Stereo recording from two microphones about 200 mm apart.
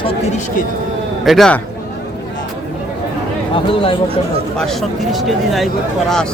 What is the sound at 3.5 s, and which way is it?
Speech, 25° left (ahead or behind).